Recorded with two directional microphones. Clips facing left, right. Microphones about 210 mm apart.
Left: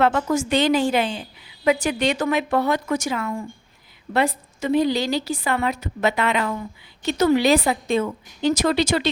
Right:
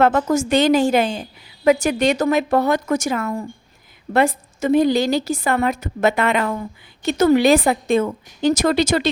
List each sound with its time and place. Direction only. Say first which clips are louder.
0.0 s a woman's voice: right 3 dB; 45° right (ahead or behind)